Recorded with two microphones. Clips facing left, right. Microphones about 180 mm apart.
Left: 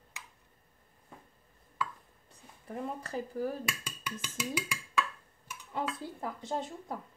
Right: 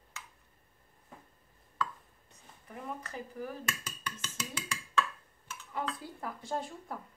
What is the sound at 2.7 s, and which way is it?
Speech, 30° left (ahead or behind).